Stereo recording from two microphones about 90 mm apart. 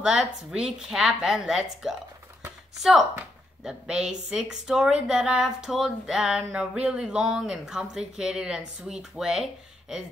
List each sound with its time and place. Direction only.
0.0 s speech: 10° right (ahead or behind)